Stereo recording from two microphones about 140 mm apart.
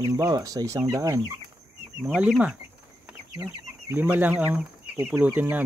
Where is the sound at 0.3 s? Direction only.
25° right (ahead or behind).